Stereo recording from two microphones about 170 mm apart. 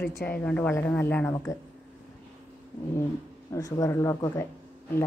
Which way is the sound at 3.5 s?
20° left (ahead or behind).